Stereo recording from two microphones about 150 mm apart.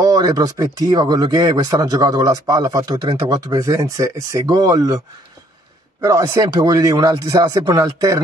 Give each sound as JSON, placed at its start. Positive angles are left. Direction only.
{"t": 0.0, "sound": "speech", "side_deg": -25}